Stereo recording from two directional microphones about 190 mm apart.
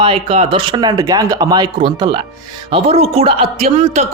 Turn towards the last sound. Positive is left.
turn(degrees=-35)  # may be behind; listen again after turning